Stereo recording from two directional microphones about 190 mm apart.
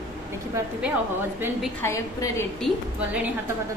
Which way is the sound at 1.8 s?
15° left (ahead or behind).